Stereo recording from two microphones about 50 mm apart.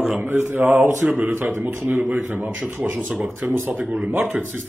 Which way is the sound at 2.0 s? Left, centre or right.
Right.